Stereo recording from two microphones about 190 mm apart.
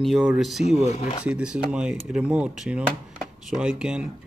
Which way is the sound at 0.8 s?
35° left (ahead or behind).